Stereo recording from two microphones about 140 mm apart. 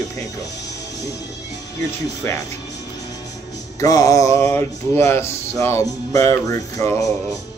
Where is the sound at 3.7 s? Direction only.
25° left (ahead or behind).